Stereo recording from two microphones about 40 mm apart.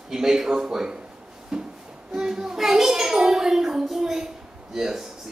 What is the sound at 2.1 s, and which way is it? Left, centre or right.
A child's voice, centre.